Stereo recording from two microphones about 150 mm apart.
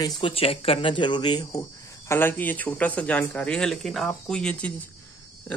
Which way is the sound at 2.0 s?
15° left (ahead or behind).